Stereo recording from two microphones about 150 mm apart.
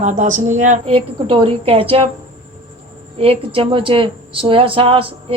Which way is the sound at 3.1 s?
40° right (ahead or behind).